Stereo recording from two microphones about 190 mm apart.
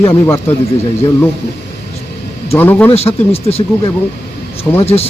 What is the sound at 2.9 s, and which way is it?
Speech, 30° left (ahead or behind).